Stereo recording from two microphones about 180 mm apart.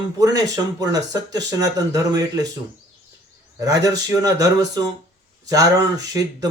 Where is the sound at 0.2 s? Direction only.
20° right (ahead or behind).